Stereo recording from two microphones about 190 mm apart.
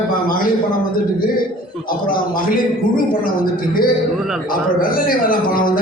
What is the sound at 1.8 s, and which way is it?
A man's voice, 50° left (ahead or behind).